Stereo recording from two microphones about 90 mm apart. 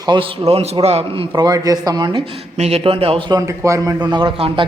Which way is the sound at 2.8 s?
90° right.